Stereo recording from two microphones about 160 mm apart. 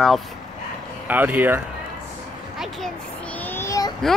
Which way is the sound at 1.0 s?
10° right (ahead or behind).